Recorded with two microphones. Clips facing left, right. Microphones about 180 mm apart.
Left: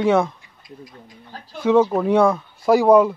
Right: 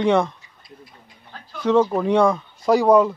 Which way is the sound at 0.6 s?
40° left (ahead or behind).